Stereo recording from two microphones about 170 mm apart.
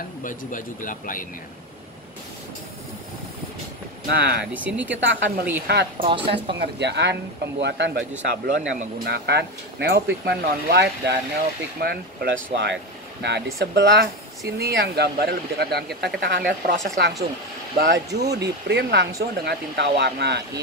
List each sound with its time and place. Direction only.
0.2 s speech: 50° left (ahead or behind)
4.1 s speech: 75° right (ahead or behind)
4.6 s speech: 10° right (ahead or behind)
5.0 s speech: 85° right
6.0 s speech: 35° right (ahead or behind)
6.6 s speech: 85° right
11.8 s speech: 70° right (ahead or behind); by 14.0 s 90° right
14.6 s speech: 70° right (ahead or behind)
16.0 s speech: 90° right
16.3 s speech: 65° right (ahead or behind); by 20.4 s 80° right